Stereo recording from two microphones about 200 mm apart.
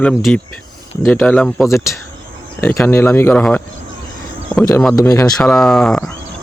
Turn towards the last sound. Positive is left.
turn(degrees=0)  # may be behind; listen again after turning